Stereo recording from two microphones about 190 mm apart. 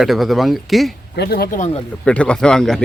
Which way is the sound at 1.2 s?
55° left (ahead or behind).